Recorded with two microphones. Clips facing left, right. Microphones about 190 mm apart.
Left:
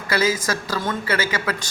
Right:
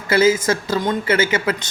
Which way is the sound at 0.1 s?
25° right (ahead or behind).